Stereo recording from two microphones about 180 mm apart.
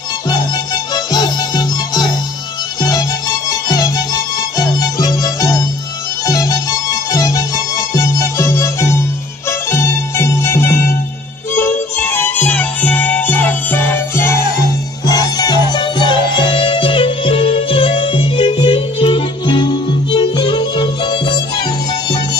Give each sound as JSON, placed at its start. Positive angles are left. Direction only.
{"t": 0.9, "sound": "music", "side_deg": 20}